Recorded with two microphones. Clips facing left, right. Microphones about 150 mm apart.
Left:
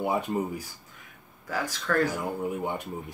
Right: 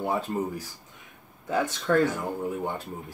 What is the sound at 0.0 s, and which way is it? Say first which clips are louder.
Speech: even; 10° left (ahead or behind).